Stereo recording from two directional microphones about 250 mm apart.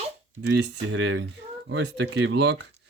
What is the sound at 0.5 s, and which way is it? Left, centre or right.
Speech, right.